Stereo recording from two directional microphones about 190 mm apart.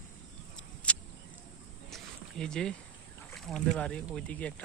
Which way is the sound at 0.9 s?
5° left (ahead or behind).